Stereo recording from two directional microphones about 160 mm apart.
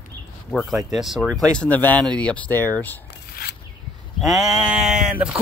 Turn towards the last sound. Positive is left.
turn(degrees=-5)  # may be behind; listen again after turning